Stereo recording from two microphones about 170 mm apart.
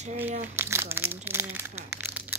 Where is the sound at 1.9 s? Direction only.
10° right (ahead or behind).